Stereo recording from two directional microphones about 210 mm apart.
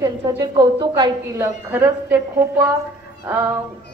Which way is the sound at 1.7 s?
10° right (ahead or behind).